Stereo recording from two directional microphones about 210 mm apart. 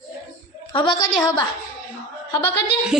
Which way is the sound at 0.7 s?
20° left (ahead or behind).